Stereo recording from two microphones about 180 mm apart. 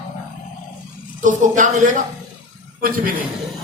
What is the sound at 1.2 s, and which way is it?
A man's voice, 45° right (ahead or behind).